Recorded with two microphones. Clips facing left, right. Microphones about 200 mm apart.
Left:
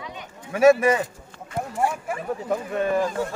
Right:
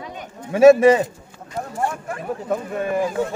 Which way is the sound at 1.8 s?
10° left (ahead or behind).